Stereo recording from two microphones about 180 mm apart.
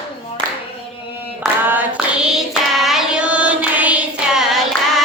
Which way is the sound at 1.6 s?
10° right (ahead or behind).